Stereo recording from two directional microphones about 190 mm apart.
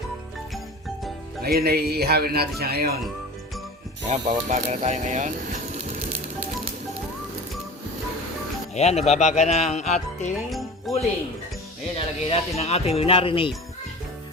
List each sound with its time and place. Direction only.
1.5 s speech: 55° right (ahead or behind)
4.1 s speech: 40° right (ahead or behind)
8.7 s speech: 35° left (ahead or behind)
10.5 s music: centre (ahead or behind)
11.9 s speech: 30° left (ahead or behind)